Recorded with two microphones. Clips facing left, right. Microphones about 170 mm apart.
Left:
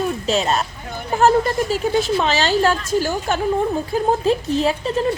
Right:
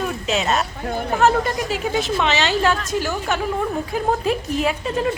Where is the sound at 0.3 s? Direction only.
35° left (ahead or behind).